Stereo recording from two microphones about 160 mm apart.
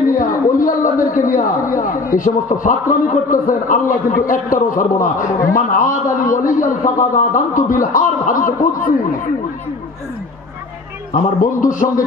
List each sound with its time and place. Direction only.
0.1 s a man's voice: 55° left (ahead or behind)
11.1 s a man's voice: 55° left (ahead or behind)